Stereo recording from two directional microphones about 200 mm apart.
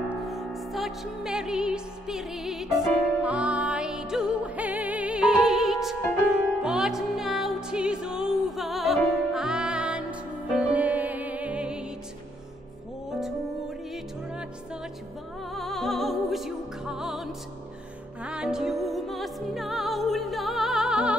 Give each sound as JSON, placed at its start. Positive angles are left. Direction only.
{"t": 0.2, "sound": "music", "side_deg": 0}
{"t": 13.1, "sound": "music", "side_deg": 0}
{"t": 15.5, "sound": "music", "side_deg": 0}